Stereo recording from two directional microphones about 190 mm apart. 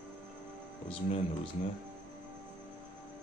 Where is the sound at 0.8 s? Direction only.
30° left (ahead or behind).